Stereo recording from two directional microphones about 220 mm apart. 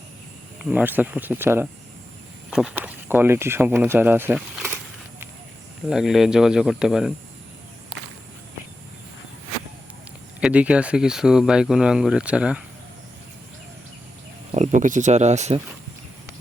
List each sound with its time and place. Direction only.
0.6 s speech: 5° right (ahead or behind)
5.9 s speech: centre (ahead or behind)
10.4 s speech: 5° right (ahead or behind)
14.5 s speech: 35° right (ahead or behind)